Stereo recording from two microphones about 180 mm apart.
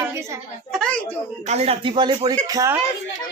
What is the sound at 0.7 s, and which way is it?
Speech, 5° left (ahead or behind).